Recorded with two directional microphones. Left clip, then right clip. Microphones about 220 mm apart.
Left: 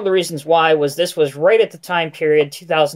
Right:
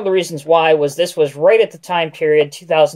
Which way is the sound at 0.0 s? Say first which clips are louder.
Right 1 dB; 40° left (ahead or behind).